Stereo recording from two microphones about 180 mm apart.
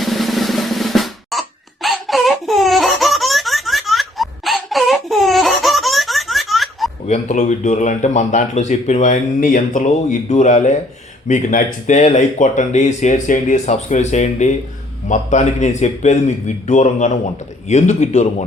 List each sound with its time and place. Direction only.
0.0 s drum roll: centre (ahead or behind)
7.1 s speech: 40° left (ahead or behind)